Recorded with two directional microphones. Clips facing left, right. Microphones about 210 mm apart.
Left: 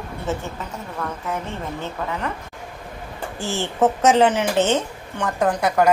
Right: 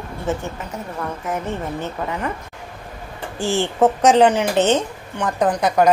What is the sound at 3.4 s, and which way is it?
A woman's voice, 15° right (ahead or behind).